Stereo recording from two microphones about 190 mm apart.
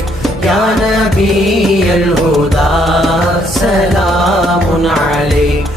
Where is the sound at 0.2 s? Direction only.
Centre (ahead or behind).